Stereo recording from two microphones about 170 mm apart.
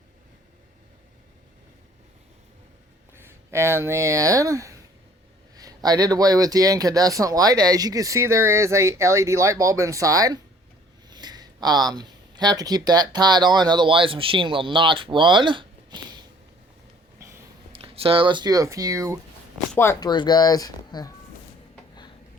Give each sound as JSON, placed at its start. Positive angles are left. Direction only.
{"t": 3.2, "sound": "speech", "side_deg": -15}
{"t": 17.2, "sound": "a sound", "side_deg": -15}
{"t": 17.7, "sound": "speech", "side_deg": -35}
{"t": 19.7, "sound": "speech", "side_deg": 15}
{"t": 20.0, "sound": "speech", "side_deg": 25}